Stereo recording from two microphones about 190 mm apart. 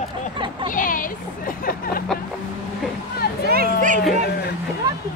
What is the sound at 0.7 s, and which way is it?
Vehicle, 45° left (ahead or behind).